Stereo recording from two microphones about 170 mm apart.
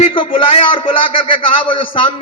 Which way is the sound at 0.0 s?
30° left (ahead or behind).